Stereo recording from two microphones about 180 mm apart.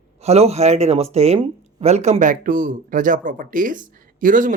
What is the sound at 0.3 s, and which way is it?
Speech, 35° right (ahead or behind).